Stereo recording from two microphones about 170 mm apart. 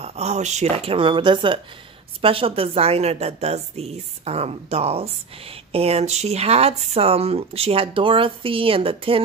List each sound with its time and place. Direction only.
0.0 s a woman's voice: 40° right (ahead or behind)